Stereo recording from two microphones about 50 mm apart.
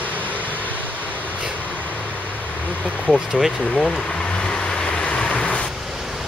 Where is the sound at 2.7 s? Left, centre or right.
Left.